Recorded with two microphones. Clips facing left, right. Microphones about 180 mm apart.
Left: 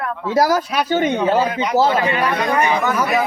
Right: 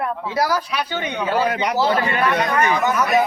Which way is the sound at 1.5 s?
65° right (ahead or behind).